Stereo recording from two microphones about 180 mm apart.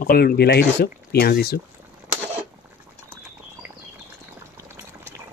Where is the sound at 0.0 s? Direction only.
55° left (ahead or behind).